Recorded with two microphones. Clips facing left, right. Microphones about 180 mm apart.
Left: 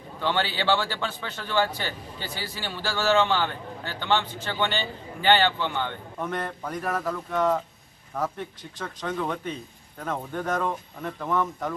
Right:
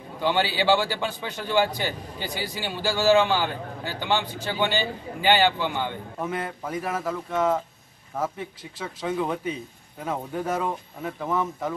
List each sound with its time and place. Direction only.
0.2 s a man's voice: 10° right (ahead or behind)